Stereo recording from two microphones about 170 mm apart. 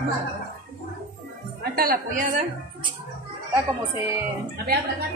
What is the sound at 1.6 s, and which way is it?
Speech, 60° right (ahead or behind).